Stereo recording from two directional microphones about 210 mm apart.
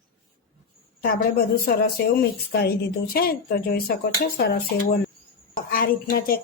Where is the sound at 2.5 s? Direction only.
50° left (ahead or behind).